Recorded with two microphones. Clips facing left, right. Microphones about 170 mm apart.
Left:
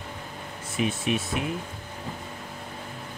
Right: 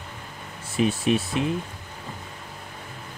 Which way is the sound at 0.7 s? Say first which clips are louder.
Right 5 dB; 35° right (ahead or behind).